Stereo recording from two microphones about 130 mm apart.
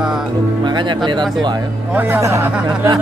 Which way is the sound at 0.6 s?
35° right (ahead or behind).